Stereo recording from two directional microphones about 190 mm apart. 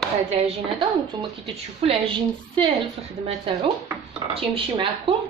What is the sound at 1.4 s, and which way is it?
Speech, 30° right (ahead or behind).